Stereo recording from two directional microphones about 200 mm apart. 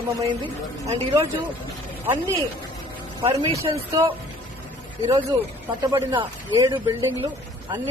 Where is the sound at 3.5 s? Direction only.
15° right (ahead or behind).